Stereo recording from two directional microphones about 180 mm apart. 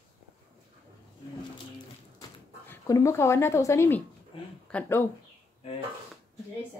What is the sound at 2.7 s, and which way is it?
Speech, 15° left (ahead or behind).